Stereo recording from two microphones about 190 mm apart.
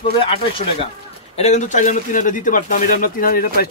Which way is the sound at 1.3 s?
35° left (ahead or behind).